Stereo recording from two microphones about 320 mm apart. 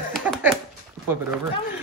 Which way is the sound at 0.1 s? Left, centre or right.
Centre.